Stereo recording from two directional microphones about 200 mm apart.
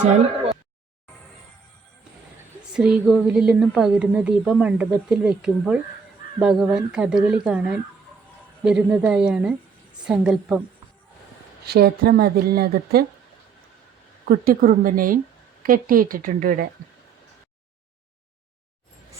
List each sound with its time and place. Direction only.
0.0 s speech: 35° right (ahead or behind)
2.7 s a woman's voice: 5° right (ahead or behind)
11.6 s a woman's voice: 50° right (ahead or behind)
14.3 s a woman's voice: 45° right (ahead or behind)